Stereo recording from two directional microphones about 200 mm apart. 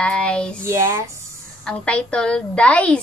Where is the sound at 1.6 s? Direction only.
5° left (ahead or behind).